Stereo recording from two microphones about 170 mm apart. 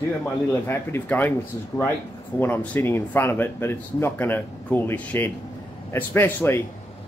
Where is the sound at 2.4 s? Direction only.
10° left (ahead or behind).